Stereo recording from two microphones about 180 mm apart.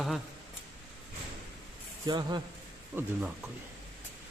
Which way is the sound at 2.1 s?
25° right (ahead or behind).